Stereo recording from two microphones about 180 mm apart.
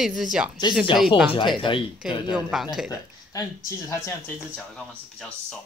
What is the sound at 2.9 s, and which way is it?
Speech, 20° left (ahead or behind).